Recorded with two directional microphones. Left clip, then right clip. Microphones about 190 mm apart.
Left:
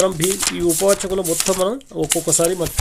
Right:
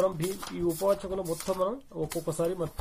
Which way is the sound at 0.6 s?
30° left (ahead or behind).